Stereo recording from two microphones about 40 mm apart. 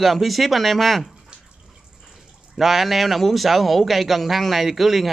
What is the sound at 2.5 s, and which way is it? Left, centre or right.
Speech, centre.